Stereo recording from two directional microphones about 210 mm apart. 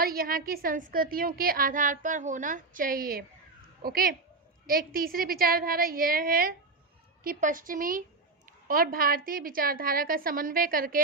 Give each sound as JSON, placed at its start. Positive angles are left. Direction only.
{"t": 0.0, "sound": "a woman's voice", "side_deg": -45}